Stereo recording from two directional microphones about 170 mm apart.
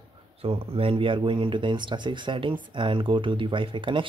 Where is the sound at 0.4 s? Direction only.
35° right (ahead or behind).